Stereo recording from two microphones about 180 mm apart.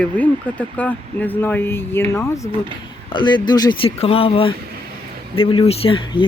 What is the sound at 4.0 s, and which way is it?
Speech, 35° left (ahead or behind).